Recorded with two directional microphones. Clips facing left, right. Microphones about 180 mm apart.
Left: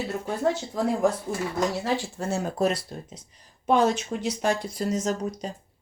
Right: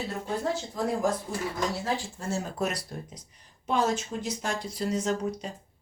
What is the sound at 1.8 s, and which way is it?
Speech, 65° left (ahead or behind).